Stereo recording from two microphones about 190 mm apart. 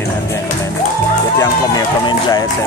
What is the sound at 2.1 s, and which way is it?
Speech, 25° left (ahead or behind).